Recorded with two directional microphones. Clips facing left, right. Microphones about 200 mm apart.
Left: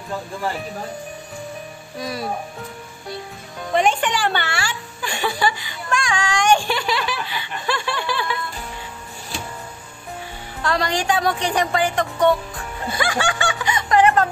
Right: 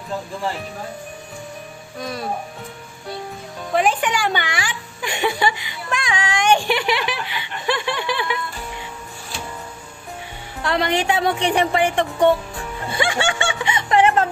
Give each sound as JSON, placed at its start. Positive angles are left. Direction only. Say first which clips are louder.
{"t": 2.0, "sound": "speech", "louder": "left 1 dB", "side_deg": 5}
{"t": 3.7, "sound": "a woman's voice", "louder": "even", "side_deg": -5}
{"t": 10.6, "sound": "a woman's voice", "louder": "right 2 dB", "side_deg": -20}
{"t": 12.9, "sound": "snicker", "louder": "right 1 dB", "side_deg": -25}